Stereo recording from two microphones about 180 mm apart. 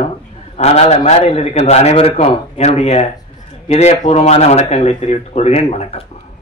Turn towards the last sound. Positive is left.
turn(degrees=35)  # may be behind; listen again after turning